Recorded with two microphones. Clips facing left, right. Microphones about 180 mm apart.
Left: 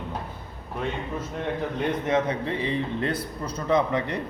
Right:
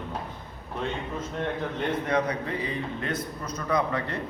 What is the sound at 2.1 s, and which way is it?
A man's voice, 25° left (ahead or behind).